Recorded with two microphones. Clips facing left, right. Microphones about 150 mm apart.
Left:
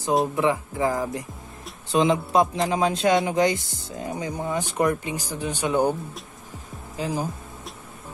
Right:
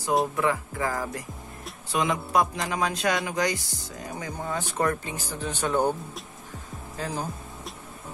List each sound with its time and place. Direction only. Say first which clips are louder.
0.4 s speech: left 4 dB; 20° left (ahead or behind)
7.0 s music: left 4 dB; 10° left (ahead or behind)